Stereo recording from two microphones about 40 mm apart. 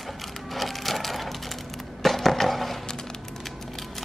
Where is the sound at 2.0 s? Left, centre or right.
Centre.